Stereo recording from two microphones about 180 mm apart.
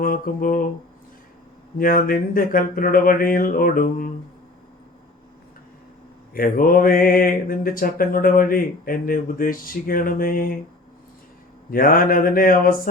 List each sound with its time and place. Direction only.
0.0 s mantra: 50° left (ahead or behind)
1.8 s mantra: 50° left (ahead or behind)
6.3 s mantra: 50° left (ahead or behind)
11.7 s mantra: 55° left (ahead or behind)